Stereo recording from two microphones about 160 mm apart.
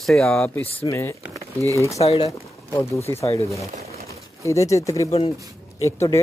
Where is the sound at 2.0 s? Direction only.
40° left (ahead or behind).